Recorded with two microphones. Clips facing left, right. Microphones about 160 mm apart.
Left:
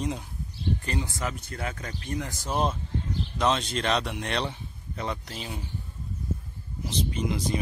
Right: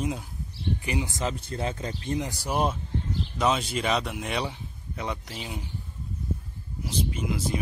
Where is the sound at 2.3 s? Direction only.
10° right (ahead or behind).